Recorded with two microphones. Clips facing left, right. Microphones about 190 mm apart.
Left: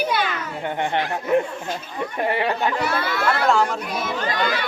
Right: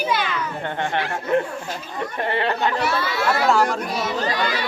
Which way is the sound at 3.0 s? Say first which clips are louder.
Even; 55° left (ahead or behind).